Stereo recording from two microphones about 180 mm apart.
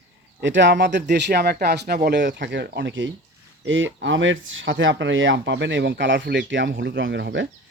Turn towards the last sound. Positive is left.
turn(degrees=-80)